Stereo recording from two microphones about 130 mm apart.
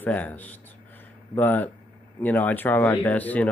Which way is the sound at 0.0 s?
15° left (ahead or behind).